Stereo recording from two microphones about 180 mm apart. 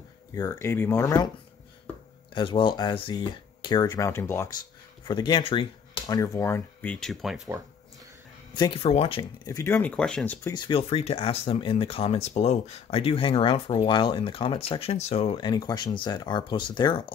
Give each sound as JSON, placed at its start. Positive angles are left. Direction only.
{"t": 0.3, "sound": "speech", "side_deg": 20}
{"t": 2.3, "sound": "speech", "side_deg": 25}
{"t": 8.5, "sound": "speech", "side_deg": 30}
{"t": 10.5, "sound": "speech", "side_deg": 30}